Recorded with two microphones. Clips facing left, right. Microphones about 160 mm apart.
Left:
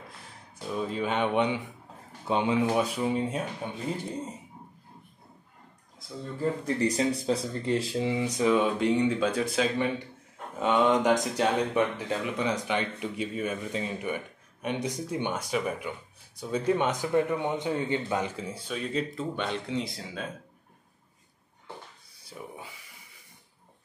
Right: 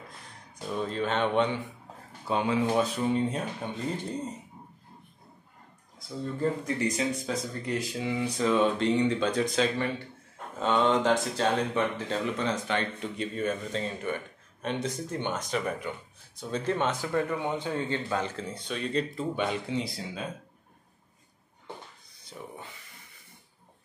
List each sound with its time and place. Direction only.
0.7 s speech: 10° left (ahead or behind)
6.6 s speech: 35° left (ahead or behind); by 20.2 s centre (ahead or behind)
22.1 s speech: 5° left (ahead or behind)